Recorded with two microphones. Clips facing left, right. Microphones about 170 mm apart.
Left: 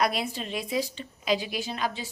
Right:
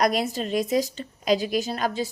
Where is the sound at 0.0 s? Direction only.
40° right (ahead or behind).